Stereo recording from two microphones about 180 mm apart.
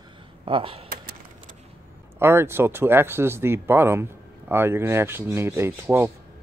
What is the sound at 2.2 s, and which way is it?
Speech, 15° right (ahead or behind).